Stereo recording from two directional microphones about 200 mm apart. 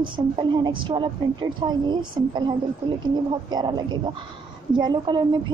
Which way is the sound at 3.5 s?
20° right (ahead or behind).